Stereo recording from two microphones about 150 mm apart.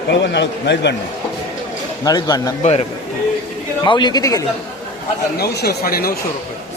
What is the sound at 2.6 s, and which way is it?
Speech, 45° left (ahead or behind).